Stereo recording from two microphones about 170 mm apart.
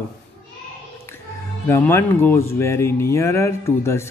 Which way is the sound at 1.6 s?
15° left (ahead or behind).